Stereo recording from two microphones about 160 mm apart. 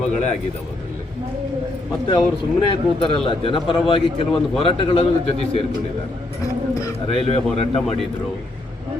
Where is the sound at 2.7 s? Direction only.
35° left (ahead or behind).